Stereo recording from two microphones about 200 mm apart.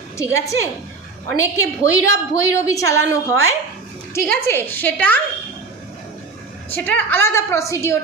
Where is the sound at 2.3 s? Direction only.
15° left (ahead or behind).